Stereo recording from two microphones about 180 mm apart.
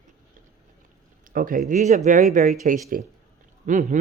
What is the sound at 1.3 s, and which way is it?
Speech, 50° right (ahead or behind).